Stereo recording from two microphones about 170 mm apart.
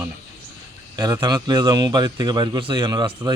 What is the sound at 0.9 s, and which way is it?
Speech, 25° right (ahead or behind).